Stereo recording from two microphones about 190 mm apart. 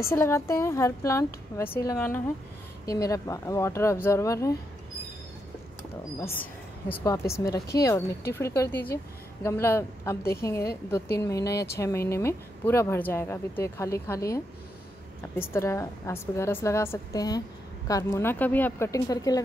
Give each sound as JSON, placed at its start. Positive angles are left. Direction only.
{"t": 0.0, "sound": "speech", "side_deg": 15}
{"t": 6.3, "sound": "a woman's voice", "side_deg": 10}